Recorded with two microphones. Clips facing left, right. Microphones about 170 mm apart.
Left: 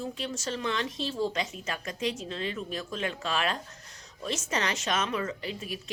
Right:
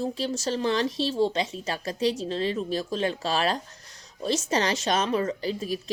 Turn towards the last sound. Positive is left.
turn(degrees=-35)  # may be behind; listen again after turning